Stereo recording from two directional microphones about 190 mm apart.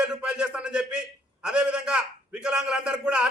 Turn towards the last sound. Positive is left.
turn(degrees=-5)  # may be behind; listen again after turning